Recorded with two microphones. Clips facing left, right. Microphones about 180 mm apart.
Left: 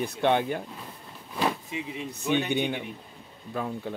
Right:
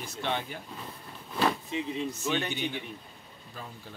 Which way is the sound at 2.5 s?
55° left (ahead or behind).